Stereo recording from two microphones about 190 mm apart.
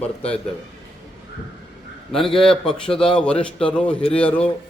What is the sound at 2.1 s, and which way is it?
A man's voice, centre (ahead or behind).